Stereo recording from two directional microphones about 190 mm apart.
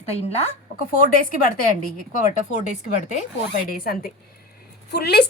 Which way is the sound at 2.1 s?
40° left (ahead or behind).